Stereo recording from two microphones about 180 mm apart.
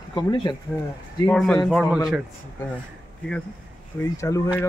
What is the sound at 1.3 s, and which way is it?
Speech, 5° left (ahead or behind).